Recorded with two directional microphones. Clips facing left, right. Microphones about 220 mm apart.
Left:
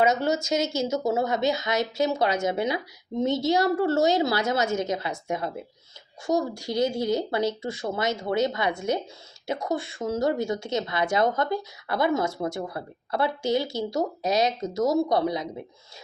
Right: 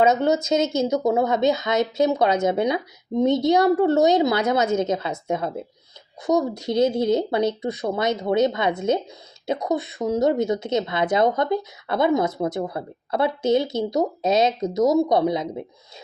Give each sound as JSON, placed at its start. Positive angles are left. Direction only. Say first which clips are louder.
{"t": 0.0, "sound": "speech", "louder": "right 4 dB", "side_deg": -20}